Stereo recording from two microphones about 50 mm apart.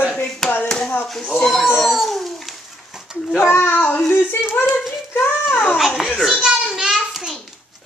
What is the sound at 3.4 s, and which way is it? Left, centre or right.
Speech, left.